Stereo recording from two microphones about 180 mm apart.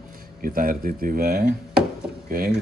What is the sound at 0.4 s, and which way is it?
Speech, 50° right (ahead or behind).